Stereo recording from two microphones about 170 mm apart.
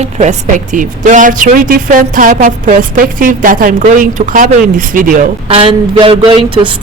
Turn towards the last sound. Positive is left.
turn(degrees=-30)  # may be behind; listen again after turning